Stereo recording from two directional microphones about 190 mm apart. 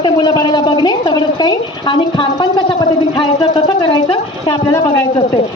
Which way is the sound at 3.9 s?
25° left (ahead or behind).